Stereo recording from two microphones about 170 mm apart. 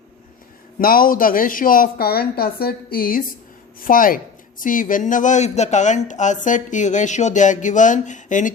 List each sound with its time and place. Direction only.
0.8 s a woman's voice: 60° left (ahead or behind)